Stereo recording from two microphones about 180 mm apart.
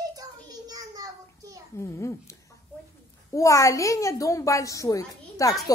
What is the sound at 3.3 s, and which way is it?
Speech, 15° left (ahead or behind).